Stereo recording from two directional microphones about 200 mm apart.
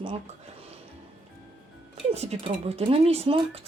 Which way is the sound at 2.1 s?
30° right (ahead or behind).